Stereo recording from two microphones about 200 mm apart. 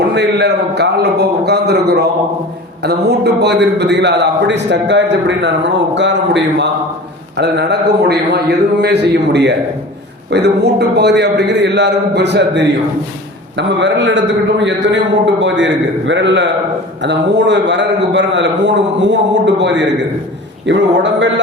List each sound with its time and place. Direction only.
0.1 s a man's voice: 60° right (ahead or behind)